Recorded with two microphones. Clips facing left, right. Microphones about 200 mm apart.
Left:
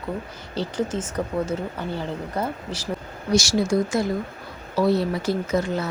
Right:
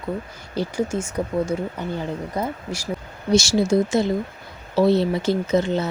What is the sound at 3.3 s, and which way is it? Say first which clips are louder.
Speech: right 3 dB; 25° right (ahead or behind).